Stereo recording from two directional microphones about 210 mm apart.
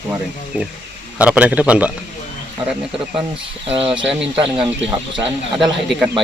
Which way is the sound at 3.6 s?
25° right (ahead or behind).